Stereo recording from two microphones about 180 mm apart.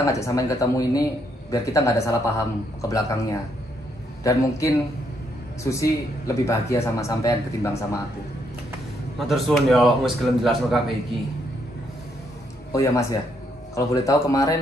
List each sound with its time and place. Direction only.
0.0 s speech: 15° left (ahead or behind)
4.2 s speech: 20° left (ahead or behind)
9.3 s a man's voice: centre (ahead or behind)
12.7 s speech: 20° left (ahead or behind)